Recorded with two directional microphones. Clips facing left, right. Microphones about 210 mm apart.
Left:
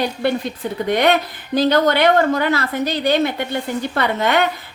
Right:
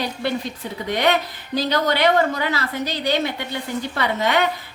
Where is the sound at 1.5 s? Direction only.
55° left (ahead or behind).